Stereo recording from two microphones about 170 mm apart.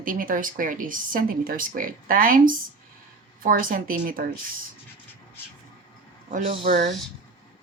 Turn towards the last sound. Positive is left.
turn(degrees=-40)  # may be behind; listen again after turning